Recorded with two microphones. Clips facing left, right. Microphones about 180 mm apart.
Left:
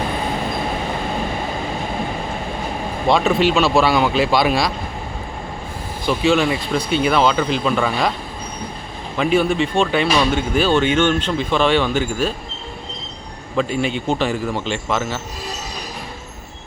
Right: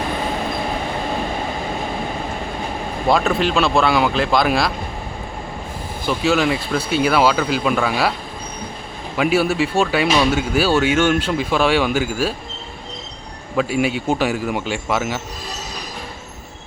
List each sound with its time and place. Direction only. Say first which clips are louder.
3.1 s speech: left 2 dB; centre (ahead or behind)
6.1 s speech: left 1 dB; centre (ahead or behind)
9.1 s speech: even; 5° right (ahead or behind)
13.6 s speech: right 1 dB; 5° right (ahead or behind)